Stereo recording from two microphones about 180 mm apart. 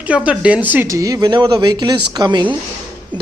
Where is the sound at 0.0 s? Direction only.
5° right (ahead or behind).